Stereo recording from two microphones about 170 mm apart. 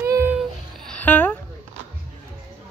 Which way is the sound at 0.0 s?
15° right (ahead or behind).